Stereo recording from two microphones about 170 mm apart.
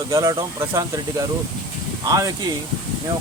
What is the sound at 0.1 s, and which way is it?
Speech, 20° right (ahead or behind).